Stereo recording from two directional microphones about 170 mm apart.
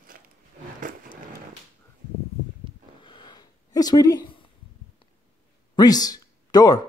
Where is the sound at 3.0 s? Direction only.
30° left (ahead or behind).